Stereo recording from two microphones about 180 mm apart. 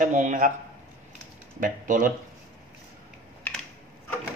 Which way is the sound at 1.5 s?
50° right (ahead or behind).